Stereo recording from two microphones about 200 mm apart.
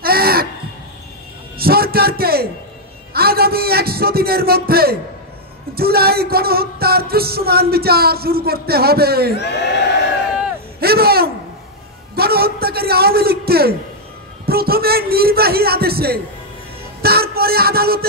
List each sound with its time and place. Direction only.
0.0 s a sound: 50° right (ahead or behind)
1.6 s music: 50° right (ahead or behind)
9.3 s speech: 55° left (ahead or behind)
10.8 s music: 50° right (ahead or behind)